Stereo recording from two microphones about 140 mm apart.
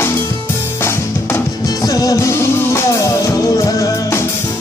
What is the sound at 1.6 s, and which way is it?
Music, 25° left (ahead or behind).